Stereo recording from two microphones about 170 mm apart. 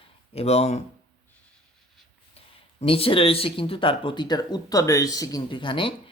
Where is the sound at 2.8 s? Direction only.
35° left (ahead or behind).